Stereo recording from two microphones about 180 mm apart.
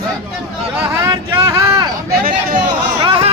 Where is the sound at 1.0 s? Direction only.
15° right (ahead or behind).